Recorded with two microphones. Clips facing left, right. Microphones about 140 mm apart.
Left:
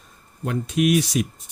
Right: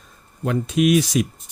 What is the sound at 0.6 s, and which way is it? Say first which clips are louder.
Speech: right 2 dB; 90° right.